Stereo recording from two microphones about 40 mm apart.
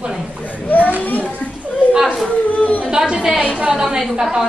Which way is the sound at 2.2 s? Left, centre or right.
Left.